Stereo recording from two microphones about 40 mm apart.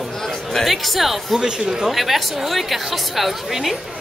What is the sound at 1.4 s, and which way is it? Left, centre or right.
Speech, centre.